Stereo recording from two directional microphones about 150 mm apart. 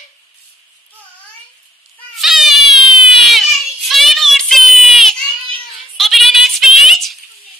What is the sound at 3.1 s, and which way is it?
Child singing, centre (ahead or behind).